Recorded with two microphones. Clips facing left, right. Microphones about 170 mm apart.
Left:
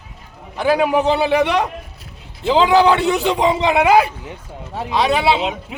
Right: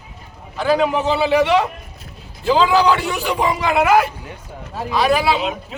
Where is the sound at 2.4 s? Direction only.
20° left (ahead or behind).